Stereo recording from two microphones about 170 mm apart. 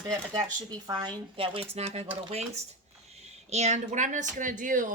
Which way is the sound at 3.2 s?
40° right (ahead or behind).